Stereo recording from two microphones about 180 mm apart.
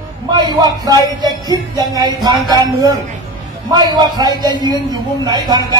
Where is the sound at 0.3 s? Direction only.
25° right (ahead or behind).